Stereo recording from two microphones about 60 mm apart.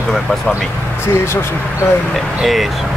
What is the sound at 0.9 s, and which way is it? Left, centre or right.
Speech, left.